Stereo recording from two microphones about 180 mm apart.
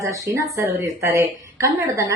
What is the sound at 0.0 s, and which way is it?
A woman's voice, 15° right (ahead or behind).